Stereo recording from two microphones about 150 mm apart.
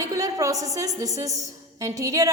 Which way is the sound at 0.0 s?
20° right (ahead or behind).